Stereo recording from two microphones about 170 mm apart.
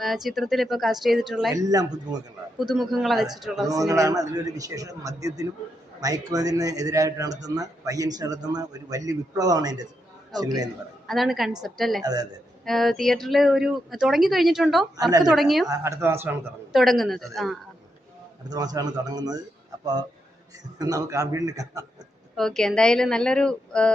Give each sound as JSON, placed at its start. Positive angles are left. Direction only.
{"t": 0.0, "sound": "speech", "side_deg": 0}
{"t": 1.5, "sound": "a man's voice", "side_deg": -20}
{"t": 2.6, "sound": "speech", "side_deg": 0}
{"t": 3.7, "sound": "a man's voice", "side_deg": -20}
{"t": 11.0, "sound": "a woman's voice", "side_deg": 0}
{"t": 12.0, "sound": "a man's voice", "side_deg": -25}
{"t": 12.6, "sound": "speech", "side_deg": 0}
{"t": 15.6, "sound": "speech", "side_deg": -20}
{"t": 16.7, "sound": "speech", "side_deg": 0}
{"t": 18.5, "sound": "a man's voice", "side_deg": -20}
{"t": 22.4, "sound": "speech", "side_deg": 5}